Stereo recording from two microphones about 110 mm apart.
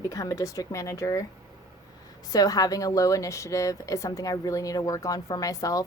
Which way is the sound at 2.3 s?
35° left (ahead or behind).